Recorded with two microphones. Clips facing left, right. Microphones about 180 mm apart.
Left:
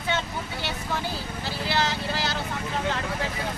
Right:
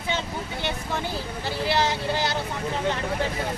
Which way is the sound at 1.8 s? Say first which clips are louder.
Right 3 dB; 15° right (ahead or behind).